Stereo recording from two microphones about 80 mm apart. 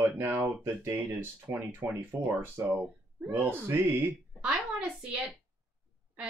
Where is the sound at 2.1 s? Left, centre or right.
Centre.